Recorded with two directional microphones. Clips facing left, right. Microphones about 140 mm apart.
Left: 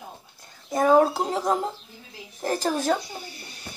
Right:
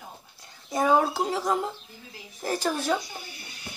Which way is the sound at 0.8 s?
40° left (ahead or behind).